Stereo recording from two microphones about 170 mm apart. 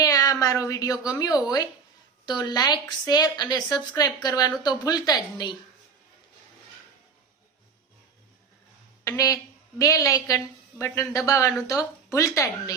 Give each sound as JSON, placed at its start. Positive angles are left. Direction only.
{"t": 0.0, "sound": "a woman's voice", "side_deg": 20}
{"t": 9.0, "sound": "a woman's voice", "side_deg": 20}